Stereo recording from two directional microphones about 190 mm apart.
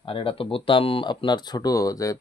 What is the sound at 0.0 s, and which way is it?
Speech, 30° left (ahead or behind).